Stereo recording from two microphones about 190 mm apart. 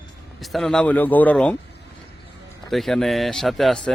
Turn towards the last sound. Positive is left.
turn(degrees=0)  # may be behind; listen again after turning